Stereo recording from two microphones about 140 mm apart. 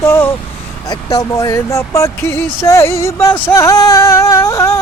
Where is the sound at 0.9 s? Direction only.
25° left (ahead or behind).